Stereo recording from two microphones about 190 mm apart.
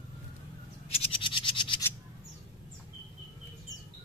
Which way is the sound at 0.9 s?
25° left (ahead or behind).